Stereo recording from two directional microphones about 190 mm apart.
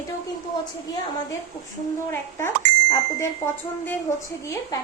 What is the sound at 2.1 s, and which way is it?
Speech, 10° left (ahead or behind).